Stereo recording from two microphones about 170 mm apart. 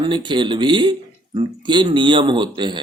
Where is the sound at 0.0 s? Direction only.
25° right (ahead or behind).